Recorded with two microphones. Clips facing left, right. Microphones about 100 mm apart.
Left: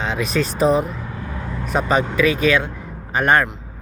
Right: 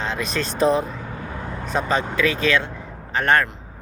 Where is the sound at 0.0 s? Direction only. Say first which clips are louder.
Left 4 dB; 5° left (ahead or behind).